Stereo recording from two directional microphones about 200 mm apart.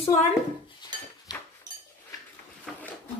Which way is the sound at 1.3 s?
20° left (ahead or behind).